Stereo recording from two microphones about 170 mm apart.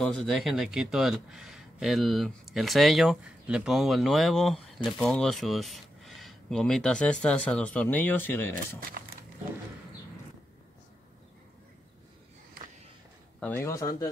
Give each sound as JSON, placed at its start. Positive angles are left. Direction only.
{"t": 0.0, "sound": "speech", "side_deg": 5}
{"t": 8.8, "sound": "a sound", "side_deg": -60}
{"t": 13.4, "sound": "speech", "side_deg": 10}